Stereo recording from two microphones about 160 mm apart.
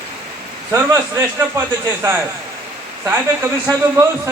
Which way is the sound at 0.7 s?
15° right (ahead or behind).